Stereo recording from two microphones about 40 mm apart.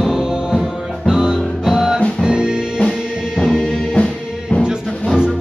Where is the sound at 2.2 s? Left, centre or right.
Right.